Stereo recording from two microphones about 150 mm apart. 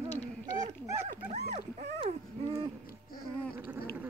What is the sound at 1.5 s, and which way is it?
Dog, 50° right (ahead or behind).